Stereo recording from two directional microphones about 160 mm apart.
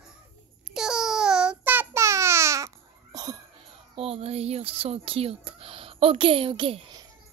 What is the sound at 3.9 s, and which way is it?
Speech, 40° right (ahead or behind).